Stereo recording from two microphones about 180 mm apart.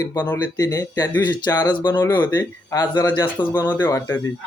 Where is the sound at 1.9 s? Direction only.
10° left (ahead or behind).